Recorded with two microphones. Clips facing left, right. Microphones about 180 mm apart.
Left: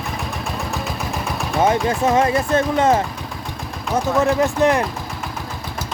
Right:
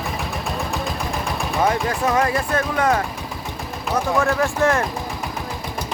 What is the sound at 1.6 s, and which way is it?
Speech, 25° left (ahead or behind).